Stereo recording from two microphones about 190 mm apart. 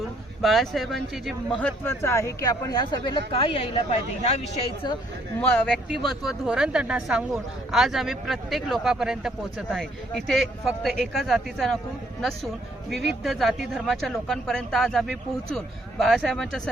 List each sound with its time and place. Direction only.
0.4 s speech: centre (ahead or behind); by 4.4 s 35° left (ahead or behind)
5.4 s speech: 10° left (ahead or behind)
12.9 s speech: centre (ahead or behind)